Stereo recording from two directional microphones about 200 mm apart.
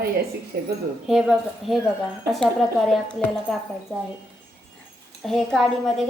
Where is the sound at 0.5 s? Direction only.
55° right (ahead or behind).